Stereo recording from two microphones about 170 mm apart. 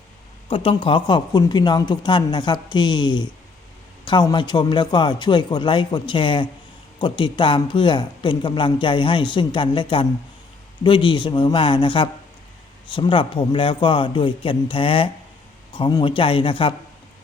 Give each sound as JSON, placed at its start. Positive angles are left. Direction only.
{"t": 0.4, "sound": "speech", "side_deg": 30}